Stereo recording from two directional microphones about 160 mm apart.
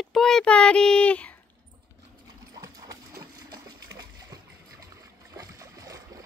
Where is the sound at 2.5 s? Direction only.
20° right (ahead or behind).